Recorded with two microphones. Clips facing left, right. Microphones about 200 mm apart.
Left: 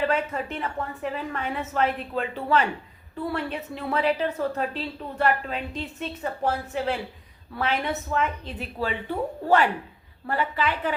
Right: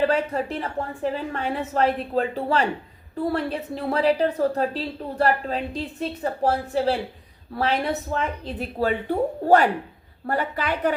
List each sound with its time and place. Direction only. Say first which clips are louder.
0.0 s a woman's voice: right 4 dB; 35° right (ahead or behind)